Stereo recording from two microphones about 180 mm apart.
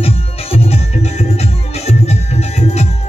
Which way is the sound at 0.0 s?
35° left (ahead or behind).